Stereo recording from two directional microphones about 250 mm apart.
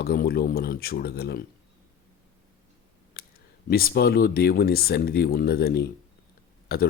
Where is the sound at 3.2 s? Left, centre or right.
Left.